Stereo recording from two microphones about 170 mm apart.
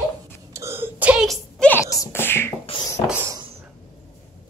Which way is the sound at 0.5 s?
15° right (ahead or behind).